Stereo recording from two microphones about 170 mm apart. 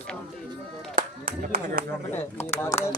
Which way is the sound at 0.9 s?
55° right (ahead or behind).